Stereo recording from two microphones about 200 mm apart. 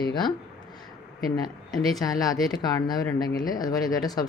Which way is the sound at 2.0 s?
20° left (ahead or behind).